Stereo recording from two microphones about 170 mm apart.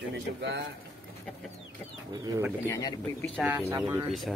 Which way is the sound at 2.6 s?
20° left (ahead or behind).